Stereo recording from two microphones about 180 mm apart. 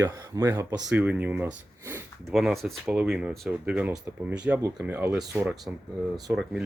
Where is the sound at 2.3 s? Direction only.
Centre (ahead or behind).